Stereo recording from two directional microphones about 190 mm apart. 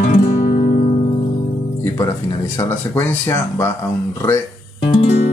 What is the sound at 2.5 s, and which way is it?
Speech, 10° left (ahead or behind).